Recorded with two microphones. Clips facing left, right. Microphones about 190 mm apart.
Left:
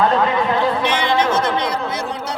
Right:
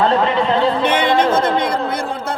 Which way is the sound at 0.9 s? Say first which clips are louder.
Right 3 dB; 55° right (ahead or behind).